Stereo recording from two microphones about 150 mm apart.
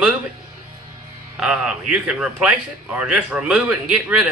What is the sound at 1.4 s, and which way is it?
A man's voice, 5° right (ahead or behind).